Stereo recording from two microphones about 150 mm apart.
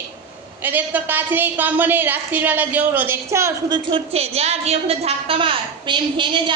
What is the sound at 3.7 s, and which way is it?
A woman's voice, 40° right (ahead or behind).